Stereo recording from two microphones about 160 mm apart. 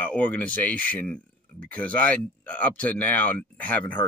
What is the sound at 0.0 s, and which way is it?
Speech, 10° left (ahead or behind).